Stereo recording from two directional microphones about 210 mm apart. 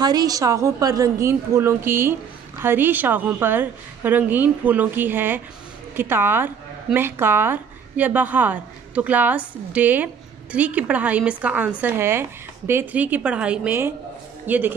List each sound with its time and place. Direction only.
0.0 s a woman's voice: 20° right (ahead or behind)